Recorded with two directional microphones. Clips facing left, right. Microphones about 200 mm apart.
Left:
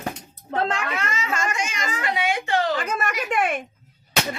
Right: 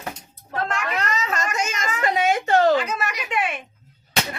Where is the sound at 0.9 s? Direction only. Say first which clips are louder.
Right 2 dB; 40° right (ahead or behind).